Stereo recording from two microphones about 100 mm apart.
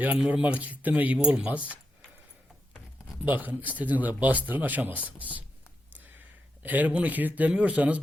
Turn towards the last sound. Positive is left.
turn(degrees=-15)  # may be behind; listen again after turning